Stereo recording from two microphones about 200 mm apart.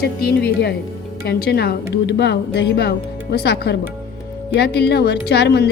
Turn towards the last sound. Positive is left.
turn(degrees=55)  # may be behind; listen again after turning